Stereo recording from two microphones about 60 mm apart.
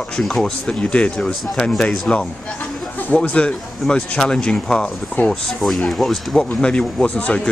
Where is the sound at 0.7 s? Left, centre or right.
Centre.